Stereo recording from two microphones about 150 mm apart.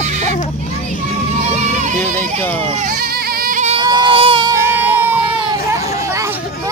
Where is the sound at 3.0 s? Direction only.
85° right.